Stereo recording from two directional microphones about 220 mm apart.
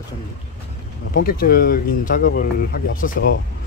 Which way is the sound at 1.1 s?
40° left (ahead or behind).